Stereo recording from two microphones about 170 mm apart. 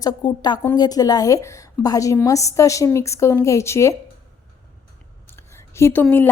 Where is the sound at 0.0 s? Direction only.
25° left (ahead or behind).